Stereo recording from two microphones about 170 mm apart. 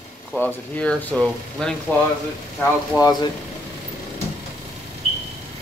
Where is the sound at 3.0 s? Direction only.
25° left (ahead or behind).